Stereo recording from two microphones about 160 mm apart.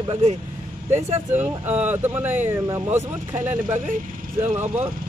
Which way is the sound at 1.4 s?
10° right (ahead or behind).